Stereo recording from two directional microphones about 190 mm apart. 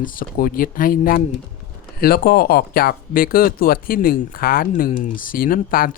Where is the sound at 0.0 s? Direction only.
50° left (ahead or behind).